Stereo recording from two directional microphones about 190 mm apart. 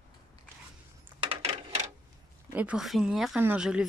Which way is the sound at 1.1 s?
25° right (ahead or behind).